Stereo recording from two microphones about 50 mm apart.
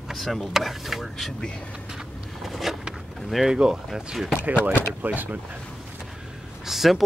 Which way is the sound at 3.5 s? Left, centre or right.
Centre.